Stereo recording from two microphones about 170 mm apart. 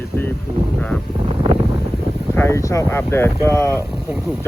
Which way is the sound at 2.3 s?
15° left (ahead or behind).